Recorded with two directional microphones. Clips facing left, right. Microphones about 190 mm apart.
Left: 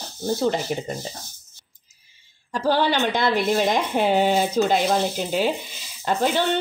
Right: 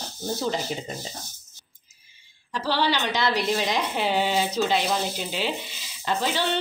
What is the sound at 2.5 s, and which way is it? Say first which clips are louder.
Speech: left 4 dB; 50° left (ahead or behind).